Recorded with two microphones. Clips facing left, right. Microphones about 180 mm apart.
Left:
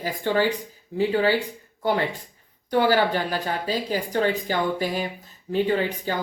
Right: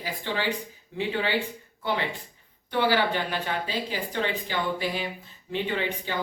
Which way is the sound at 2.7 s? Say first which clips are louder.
Left 4 dB; 45° left (ahead or behind).